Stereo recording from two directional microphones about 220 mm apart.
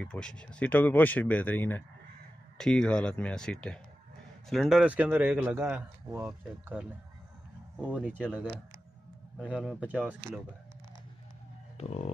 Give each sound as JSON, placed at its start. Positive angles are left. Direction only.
{"t": 0.0, "sound": "a man's voice", "side_deg": 5}
{"t": 11.7, "sound": "music", "side_deg": 30}